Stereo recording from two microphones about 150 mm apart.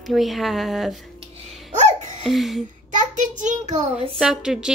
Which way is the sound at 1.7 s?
50° right (ahead or behind).